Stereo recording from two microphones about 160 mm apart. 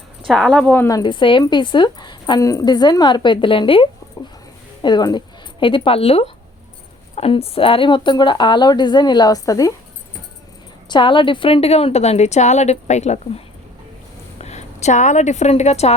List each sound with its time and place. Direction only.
0.3 s a woman's voice: 5° left (ahead or behind); by 9.7 s 20° left (ahead or behind)
10.8 s a woman's voice: 30° left (ahead or behind)